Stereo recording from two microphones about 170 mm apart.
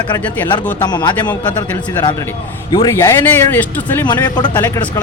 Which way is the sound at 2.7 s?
20° left (ahead or behind).